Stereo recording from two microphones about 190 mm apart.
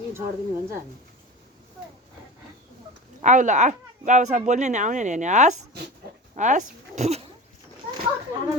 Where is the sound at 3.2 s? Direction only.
40° right (ahead or behind).